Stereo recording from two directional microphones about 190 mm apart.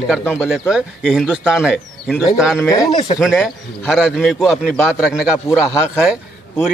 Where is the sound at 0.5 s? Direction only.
5° right (ahead or behind).